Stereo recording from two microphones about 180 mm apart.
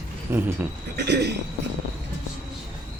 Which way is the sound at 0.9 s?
65° right (ahead or behind).